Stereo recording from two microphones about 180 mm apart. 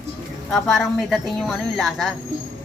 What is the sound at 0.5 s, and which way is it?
A woman's voice, centre (ahead or behind).